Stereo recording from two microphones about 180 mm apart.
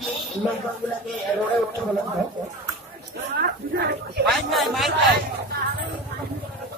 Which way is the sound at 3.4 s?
60° right (ahead or behind).